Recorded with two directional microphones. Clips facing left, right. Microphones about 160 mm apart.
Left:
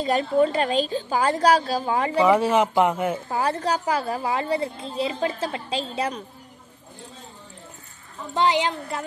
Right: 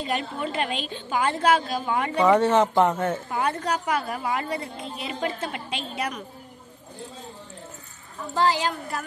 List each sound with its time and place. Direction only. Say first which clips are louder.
0.0 s a woman's voice: left 8 dB; 35° left (ahead or behind)
2.1 s speech: even; 10° left (ahead or behind)
3.3 s a woman's voice: left 2 dB; 35° left (ahead or behind)
8.4 s a woman's voice: left 2 dB; 20° left (ahead or behind)